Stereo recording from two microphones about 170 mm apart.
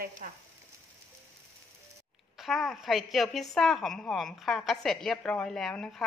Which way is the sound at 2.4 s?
Centre (ahead or behind).